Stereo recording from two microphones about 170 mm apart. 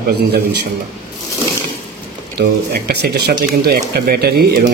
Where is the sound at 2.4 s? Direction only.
70° right (ahead or behind).